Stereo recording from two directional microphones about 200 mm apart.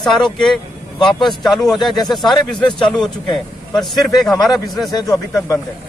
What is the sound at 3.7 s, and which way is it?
Speech, centre (ahead or behind).